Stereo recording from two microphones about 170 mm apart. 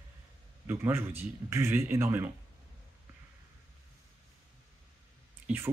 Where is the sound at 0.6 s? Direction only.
10° right (ahead or behind).